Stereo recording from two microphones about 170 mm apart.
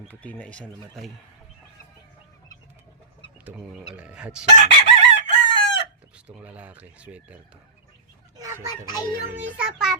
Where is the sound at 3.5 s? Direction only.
5° right (ahead or behind).